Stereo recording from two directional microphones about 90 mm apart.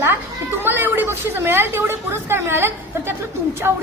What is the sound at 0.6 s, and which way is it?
A woman's voice, 25° right (ahead or behind).